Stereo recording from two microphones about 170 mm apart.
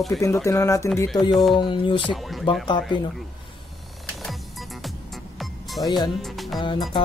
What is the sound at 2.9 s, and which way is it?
Speech, 30° left (ahead or behind).